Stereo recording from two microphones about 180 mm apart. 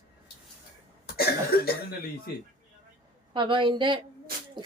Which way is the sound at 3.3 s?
25° right (ahead or behind).